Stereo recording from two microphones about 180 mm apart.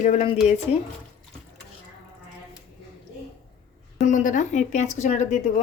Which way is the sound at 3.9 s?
45° left (ahead or behind).